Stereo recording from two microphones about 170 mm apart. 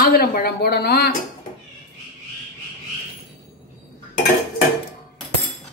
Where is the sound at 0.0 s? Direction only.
60° left (ahead or behind).